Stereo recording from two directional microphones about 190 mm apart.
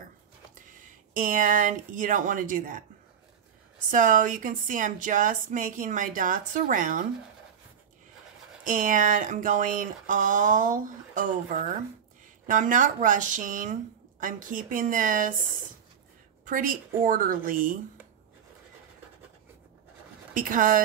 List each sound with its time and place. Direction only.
0.7 s speech: 45° right (ahead or behind)
3.9 s a woman's voice: 40° right (ahead or behind)
8.6 s a woman's voice: 45° right (ahead or behind)
16.4 s a woman's voice: 45° right (ahead or behind)
20.3 s a woman's voice: 45° right (ahead or behind)